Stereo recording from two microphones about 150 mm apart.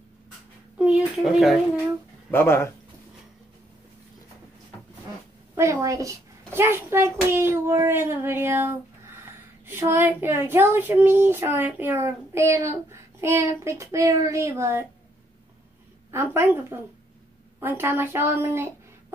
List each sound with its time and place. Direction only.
0.7 s speech: centre (ahead or behind)
2.3 s speech: 15° left (ahead or behind)
5.6 s a woman's voice: 20° right (ahead or behind)
16.1 s a woman's voice: 15° right (ahead or behind)